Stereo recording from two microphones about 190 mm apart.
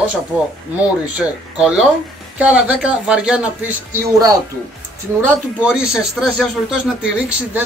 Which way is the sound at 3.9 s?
20° right (ahead or behind).